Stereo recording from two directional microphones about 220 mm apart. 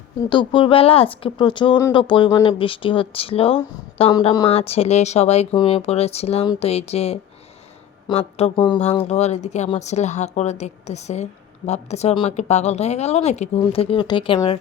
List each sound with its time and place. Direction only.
0.3 s speech: 20° left (ahead or behind)